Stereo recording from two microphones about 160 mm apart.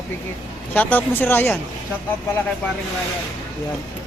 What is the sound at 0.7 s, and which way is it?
Speech, 10° left (ahead or behind).